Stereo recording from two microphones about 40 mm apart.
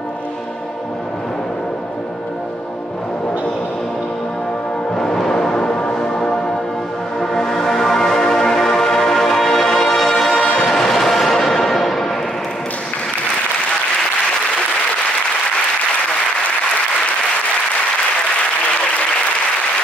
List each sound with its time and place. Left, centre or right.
4.9 s music: centre